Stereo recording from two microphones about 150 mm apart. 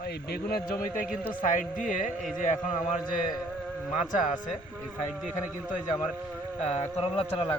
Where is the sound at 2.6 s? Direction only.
50° left (ahead or behind).